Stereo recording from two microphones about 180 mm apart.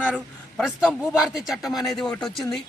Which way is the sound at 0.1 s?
5° right (ahead or behind).